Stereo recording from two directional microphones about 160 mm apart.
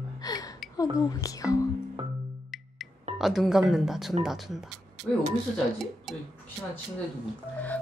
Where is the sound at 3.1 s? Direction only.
Centre (ahead or behind).